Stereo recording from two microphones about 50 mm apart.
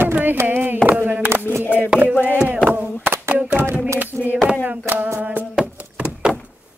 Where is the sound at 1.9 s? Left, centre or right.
Centre.